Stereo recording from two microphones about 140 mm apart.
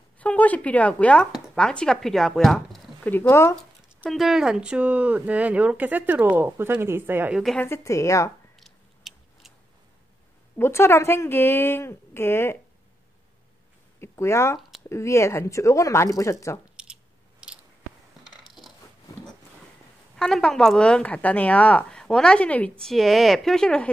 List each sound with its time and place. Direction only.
0.2 s speech: 10° left (ahead or behind)
3.0 s speech: 15° left (ahead or behind)
4.0 s speech: centre (ahead or behind)
7.3 s a woman's voice: centre (ahead or behind)
7.6 s speech: 20° left (ahead or behind)
8.5 s a sound: centre (ahead or behind)
10.6 s speech: 15° left (ahead or behind)
13.9 s speech: 20° left (ahead or behind)
16.7 s mechanisms: 5° right (ahead or behind)
18.2 s coin: centre (ahead or behind)
20.2 s a woman's voice: 5° left (ahead or behind)